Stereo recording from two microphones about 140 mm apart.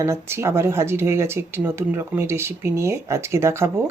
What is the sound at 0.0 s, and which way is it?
Speech, 20° right (ahead or behind).